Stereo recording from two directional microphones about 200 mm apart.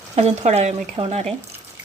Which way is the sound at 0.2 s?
30° right (ahead or behind).